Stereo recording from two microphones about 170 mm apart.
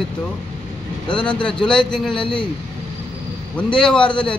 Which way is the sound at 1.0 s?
30° left (ahead or behind).